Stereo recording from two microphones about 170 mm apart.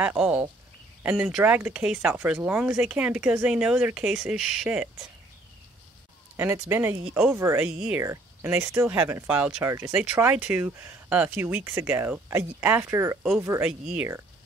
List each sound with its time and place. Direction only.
0.0 s a sound: 5° right (ahead or behind)
1.0 s speech: 5° right (ahead or behind)
6.3 s speech: 15° right (ahead or behind)